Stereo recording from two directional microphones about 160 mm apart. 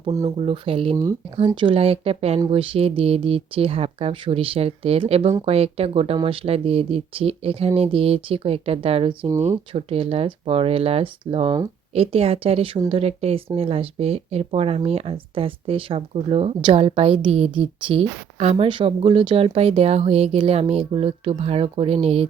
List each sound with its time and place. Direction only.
0.3 s speech: 35° right (ahead or behind)